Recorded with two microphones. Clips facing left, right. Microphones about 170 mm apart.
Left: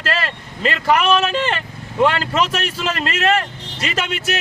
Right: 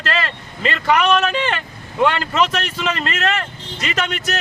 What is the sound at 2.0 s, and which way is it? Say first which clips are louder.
Speech: left 1 dB; 35° left (ahead or behind).